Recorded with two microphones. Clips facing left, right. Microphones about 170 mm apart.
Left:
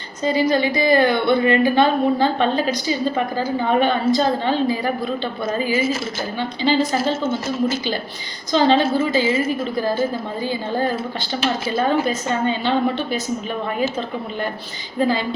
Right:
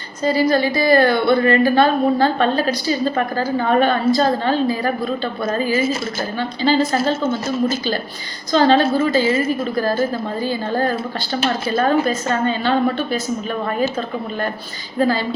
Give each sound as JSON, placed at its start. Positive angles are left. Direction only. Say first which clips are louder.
{"t": 0.3, "sound": "a woman's voice", "louder": "right 2 dB", "side_deg": 20}
{"t": 8.5, "sound": "a woman's voice", "louder": "right 2 dB", "side_deg": 15}
{"t": 14.9, "sound": "a woman's voice", "louder": "right 2 dB", "side_deg": 15}